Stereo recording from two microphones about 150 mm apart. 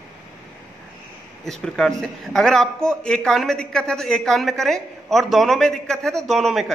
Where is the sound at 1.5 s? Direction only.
5° left (ahead or behind).